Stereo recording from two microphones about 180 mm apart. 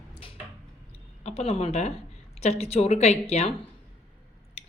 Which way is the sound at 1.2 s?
35° left (ahead or behind).